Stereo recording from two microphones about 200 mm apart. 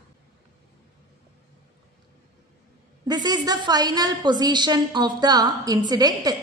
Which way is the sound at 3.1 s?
20° right (ahead or behind).